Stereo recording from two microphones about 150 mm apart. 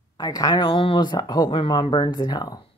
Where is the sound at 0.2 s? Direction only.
25° left (ahead or behind).